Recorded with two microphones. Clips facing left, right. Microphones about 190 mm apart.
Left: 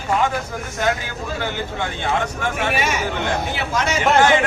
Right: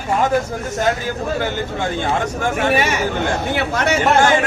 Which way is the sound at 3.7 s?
60° right (ahead or behind).